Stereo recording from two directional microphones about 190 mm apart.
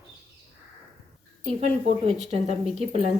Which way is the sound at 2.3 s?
35° right (ahead or behind).